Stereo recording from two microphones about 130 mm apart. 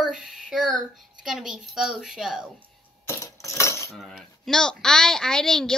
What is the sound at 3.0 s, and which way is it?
Coin, 20° left (ahead or behind).